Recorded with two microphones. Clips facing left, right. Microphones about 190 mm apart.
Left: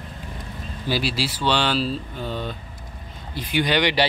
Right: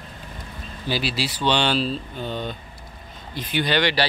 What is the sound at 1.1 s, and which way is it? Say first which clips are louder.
Speech: even; 10° left (ahead or behind).